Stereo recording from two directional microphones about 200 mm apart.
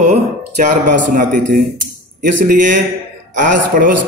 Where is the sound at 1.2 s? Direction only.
45° right (ahead or behind).